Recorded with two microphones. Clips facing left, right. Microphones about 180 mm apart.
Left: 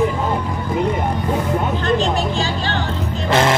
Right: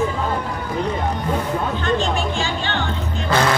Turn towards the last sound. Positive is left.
turn(degrees=25)  # may be behind; listen again after turning